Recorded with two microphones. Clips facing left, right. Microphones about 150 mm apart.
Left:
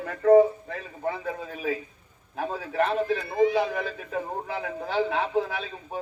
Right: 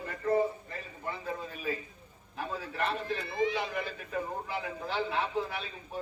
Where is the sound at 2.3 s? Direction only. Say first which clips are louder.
Left 6 dB; 90° left.